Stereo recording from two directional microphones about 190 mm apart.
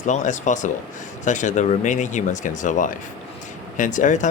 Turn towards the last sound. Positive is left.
turn(degrees=40)  # may be behind; listen again after turning